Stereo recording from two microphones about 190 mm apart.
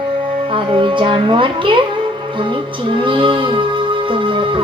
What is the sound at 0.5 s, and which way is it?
Music, 25° right (ahead or behind).